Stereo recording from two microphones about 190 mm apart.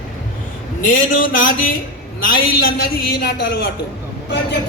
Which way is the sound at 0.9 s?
45° left (ahead or behind).